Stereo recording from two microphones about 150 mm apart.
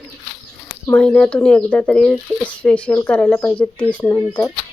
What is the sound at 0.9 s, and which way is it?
Speech, 5° left (ahead or behind).